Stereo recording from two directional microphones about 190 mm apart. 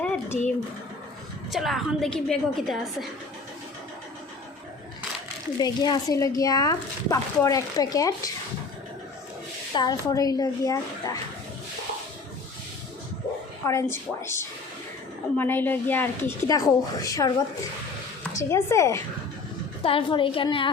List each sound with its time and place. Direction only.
0.0 s a sound: 5° left (ahead or behind)
1.5 s a woman's voice: centre (ahead or behind)
5.5 s speech: 20° left (ahead or behind)
9.7 s speech: 20° left (ahead or behind)
13.7 s a woman's voice: 15° left (ahead or behind)
18.3 s a woman's voice: 15° left (ahead or behind)
19.8 s speech: 30° left (ahead or behind)